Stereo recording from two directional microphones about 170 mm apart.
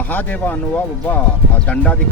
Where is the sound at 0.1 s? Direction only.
10° left (ahead or behind).